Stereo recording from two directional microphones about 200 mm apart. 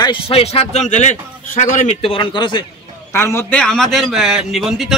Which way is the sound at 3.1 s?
10° left (ahead or behind).